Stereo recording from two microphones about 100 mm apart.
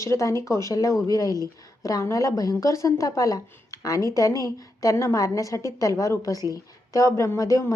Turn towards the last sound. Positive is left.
turn(degrees=35)  # may be behind; listen again after turning